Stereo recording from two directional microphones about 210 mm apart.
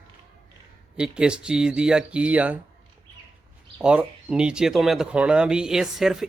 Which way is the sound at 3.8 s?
5° right (ahead or behind).